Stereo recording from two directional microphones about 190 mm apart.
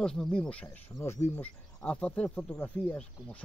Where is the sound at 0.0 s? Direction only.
5° left (ahead or behind).